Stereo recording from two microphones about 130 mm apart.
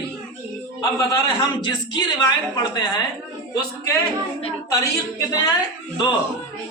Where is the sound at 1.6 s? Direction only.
35° left (ahead or behind).